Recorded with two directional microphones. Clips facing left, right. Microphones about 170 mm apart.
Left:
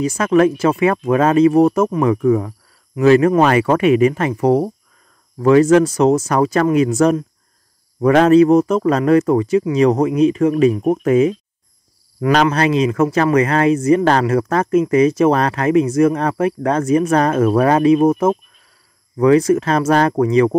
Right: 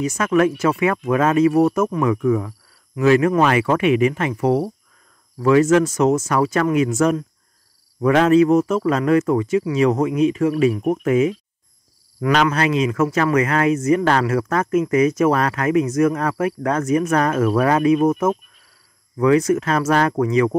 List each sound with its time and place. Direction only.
0.0 s speech: 30° left (ahead or behind)